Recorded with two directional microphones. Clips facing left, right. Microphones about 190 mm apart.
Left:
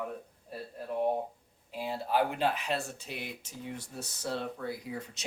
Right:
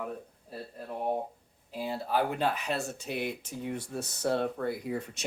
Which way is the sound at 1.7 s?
40° right (ahead or behind).